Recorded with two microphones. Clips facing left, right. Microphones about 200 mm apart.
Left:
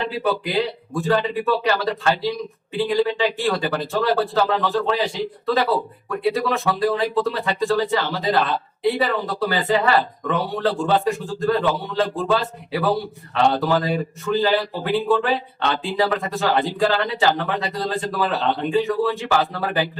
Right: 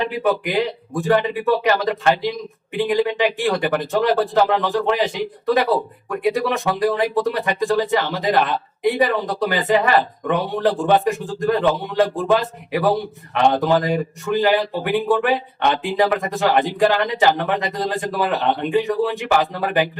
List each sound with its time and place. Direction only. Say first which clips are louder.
0.0 s a man's voice: right 3 dB; 15° right (ahead or behind)